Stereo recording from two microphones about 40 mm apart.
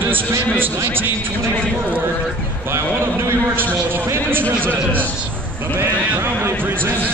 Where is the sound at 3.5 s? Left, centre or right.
Right.